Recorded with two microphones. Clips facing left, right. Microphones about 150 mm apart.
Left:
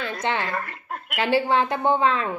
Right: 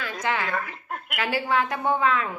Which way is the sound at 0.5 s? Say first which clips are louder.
Even; centre (ahead or behind).